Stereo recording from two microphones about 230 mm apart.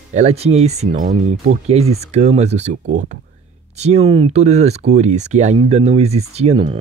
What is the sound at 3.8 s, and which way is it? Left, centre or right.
Speech, right.